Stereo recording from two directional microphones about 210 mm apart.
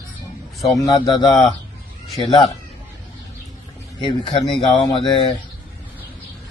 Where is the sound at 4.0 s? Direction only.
20° left (ahead or behind).